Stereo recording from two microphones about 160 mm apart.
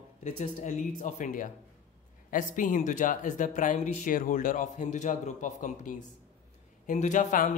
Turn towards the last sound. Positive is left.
turn(degrees=50)  # may be behind; listen again after turning